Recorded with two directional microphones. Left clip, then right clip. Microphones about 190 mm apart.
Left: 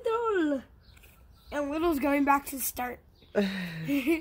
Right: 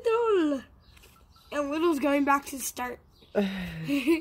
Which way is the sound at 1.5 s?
20° left (ahead or behind).